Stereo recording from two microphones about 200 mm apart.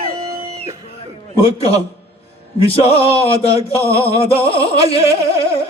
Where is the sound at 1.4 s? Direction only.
30° left (ahead or behind).